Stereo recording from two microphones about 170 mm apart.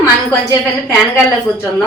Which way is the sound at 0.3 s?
15° left (ahead or behind).